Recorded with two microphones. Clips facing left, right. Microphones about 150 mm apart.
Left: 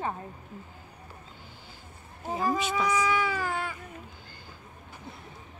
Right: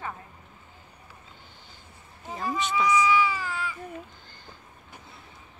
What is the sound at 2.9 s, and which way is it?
Baby cry, 50° left (ahead or behind).